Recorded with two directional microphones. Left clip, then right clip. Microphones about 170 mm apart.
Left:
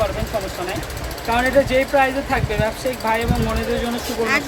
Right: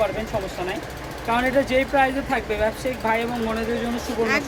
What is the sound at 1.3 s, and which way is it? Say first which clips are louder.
Speech: left 4 dB; 15° right (ahead or behind).